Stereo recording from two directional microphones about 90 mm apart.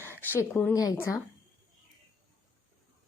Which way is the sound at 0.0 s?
25° left (ahead or behind).